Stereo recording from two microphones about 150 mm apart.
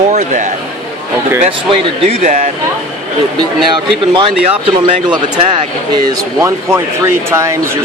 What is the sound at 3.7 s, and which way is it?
Speech, 30° right (ahead or behind).